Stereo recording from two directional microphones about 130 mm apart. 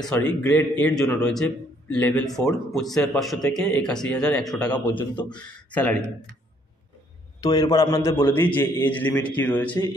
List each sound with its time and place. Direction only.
0.0 s a man's voice: 10° left (ahead or behind)
7.4 s a man's voice: 25° left (ahead or behind); by 9.8 s 10° left (ahead or behind)